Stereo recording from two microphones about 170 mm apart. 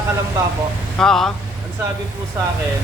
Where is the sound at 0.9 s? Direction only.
5° left (ahead or behind).